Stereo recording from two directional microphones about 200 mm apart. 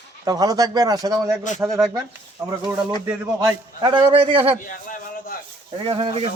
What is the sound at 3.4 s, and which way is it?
A man's voice, 20° right (ahead or behind).